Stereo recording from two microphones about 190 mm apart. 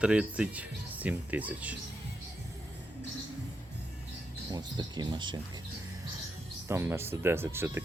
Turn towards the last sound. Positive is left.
turn(degrees=-10)  # may be behind; listen again after turning